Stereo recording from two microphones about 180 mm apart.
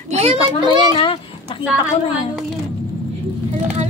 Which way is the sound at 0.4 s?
25° left (ahead or behind).